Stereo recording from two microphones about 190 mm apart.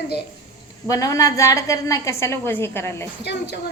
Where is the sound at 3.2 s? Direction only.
65° left (ahead or behind).